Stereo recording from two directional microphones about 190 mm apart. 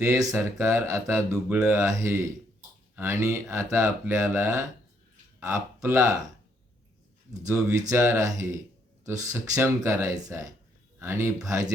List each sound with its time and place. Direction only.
0.1 s speech: 15° right (ahead or behind)
1.1 s speech: 5° right (ahead or behind)
1.6 s speech: 15° right (ahead or behind)
7.3 s speech: 15° right (ahead or behind)